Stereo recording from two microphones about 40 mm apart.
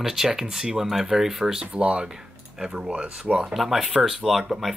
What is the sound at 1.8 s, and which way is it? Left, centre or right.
Speech, right.